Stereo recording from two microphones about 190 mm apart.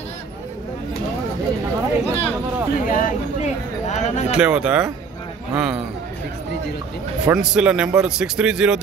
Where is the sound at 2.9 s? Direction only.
45° left (ahead or behind).